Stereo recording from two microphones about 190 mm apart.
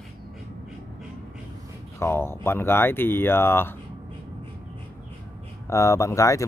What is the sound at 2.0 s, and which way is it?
Speech, 10° left (ahead or behind).